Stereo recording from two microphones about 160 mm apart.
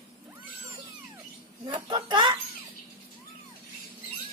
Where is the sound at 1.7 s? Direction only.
30° right (ahead or behind).